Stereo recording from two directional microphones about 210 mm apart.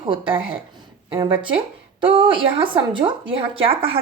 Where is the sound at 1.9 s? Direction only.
25° right (ahead or behind).